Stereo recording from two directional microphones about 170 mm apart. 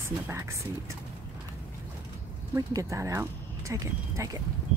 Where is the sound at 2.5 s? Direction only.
15° right (ahead or behind).